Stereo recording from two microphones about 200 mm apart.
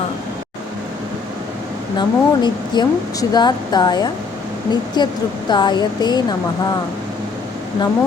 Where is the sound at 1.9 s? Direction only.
20° left (ahead or behind).